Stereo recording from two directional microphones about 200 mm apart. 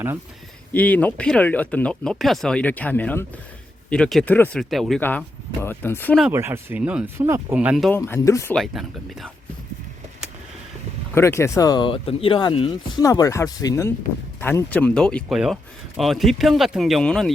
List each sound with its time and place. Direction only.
0.7 s speech: 10° left (ahead or behind)
6.2 s speech: 10° right (ahead or behind)
7.9 s speech: 10° left (ahead or behind)
8.5 s speech: centre (ahead or behind)
11.1 s speech: 15° left (ahead or behind)